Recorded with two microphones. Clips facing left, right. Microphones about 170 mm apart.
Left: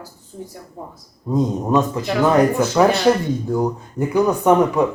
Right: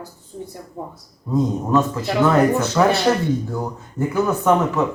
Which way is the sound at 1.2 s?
20° left (ahead or behind).